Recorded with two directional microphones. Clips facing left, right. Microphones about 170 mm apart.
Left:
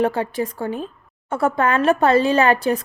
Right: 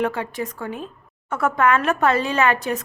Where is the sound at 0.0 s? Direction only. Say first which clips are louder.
Left 4 dB; 30° left (ahead or behind).